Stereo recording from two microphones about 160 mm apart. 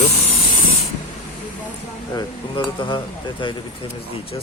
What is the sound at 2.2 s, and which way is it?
Speech, 30° left (ahead or behind).